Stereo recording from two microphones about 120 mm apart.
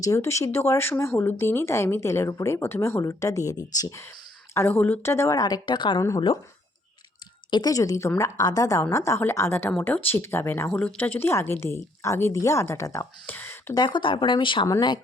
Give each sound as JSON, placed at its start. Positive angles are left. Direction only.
{"t": 0.0, "sound": "speech", "side_deg": 25}
{"t": 4.5, "sound": "speech", "side_deg": 15}
{"t": 5.4, "sound": "speech", "side_deg": 35}
{"t": 6.0, "sound": "speech", "side_deg": 25}
{"t": 7.5, "sound": "speech", "side_deg": 30}
{"t": 13.2, "sound": "a sound", "side_deg": 15}
{"t": 13.7, "sound": "speech", "side_deg": 40}